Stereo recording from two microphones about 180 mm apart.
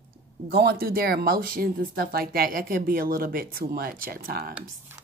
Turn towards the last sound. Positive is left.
turn(degrees=-55)  # may be behind; listen again after turning